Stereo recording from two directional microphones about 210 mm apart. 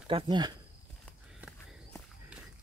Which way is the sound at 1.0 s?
Centre (ahead or behind).